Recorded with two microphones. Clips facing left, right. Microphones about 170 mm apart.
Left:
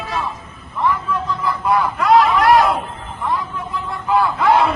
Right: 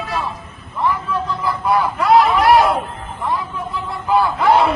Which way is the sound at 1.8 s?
30° right (ahead or behind).